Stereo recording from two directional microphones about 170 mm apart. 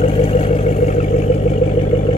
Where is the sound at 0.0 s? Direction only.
35° left (ahead or behind).